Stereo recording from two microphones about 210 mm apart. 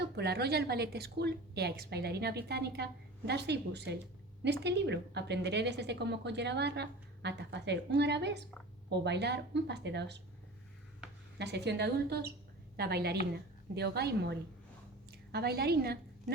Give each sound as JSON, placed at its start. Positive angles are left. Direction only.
{"t": 0.0, "sound": "a woman's voice", "side_deg": -50}
{"t": 11.3, "sound": "a woman's voice", "side_deg": -55}